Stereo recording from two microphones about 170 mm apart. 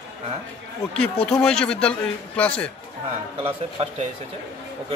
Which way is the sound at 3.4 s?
35° right (ahead or behind).